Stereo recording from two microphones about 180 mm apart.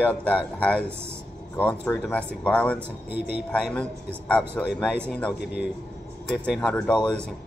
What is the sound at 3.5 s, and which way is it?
A man's voice, 5° left (ahead or behind).